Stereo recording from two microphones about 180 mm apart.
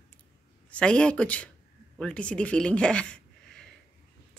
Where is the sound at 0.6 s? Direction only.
5° left (ahead or behind).